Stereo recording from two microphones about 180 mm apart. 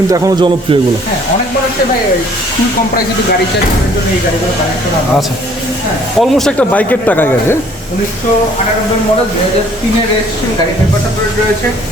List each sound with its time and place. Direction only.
0.1 s speech: 20° right (ahead or behind)
6.1 s speech: centre (ahead or behind)